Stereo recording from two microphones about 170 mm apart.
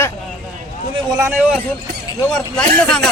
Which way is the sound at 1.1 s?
15° right (ahead or behind).